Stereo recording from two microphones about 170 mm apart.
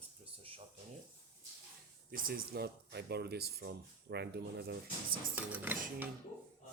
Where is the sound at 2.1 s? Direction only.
60° right (ahead or behind).